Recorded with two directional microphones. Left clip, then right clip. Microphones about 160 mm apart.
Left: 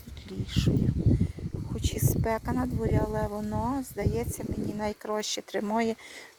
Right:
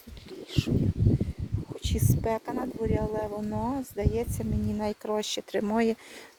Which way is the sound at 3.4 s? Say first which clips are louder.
Even; 10° left (ahead or behind).